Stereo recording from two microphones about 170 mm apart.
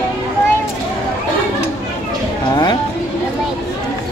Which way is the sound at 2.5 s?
25° left (ahead or behind).